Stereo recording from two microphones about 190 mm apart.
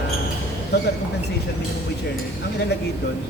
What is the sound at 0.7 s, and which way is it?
Speech, 60° left (ahead or behind).